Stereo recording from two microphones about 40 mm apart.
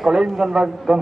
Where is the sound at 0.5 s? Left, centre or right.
Centre.